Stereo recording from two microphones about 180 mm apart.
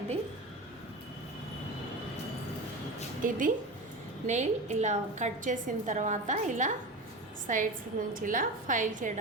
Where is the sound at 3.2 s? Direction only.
45° right (ahead or behind).